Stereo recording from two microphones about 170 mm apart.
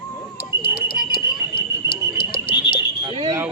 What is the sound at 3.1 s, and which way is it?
Speech, 20° right (ahead or behind).